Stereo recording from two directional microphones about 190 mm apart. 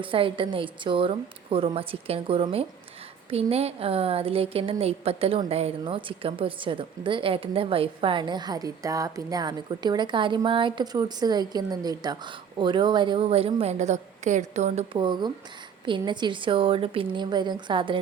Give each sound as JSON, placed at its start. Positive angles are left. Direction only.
{"t": 0.0, "sound": "a woman's voice", "side_deg": -30}
{"t": 14.9, "sound": "a woman's voice", "side_deg": -25}